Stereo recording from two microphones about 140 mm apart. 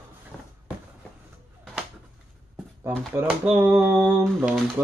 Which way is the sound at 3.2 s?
10° right (ahead or behind).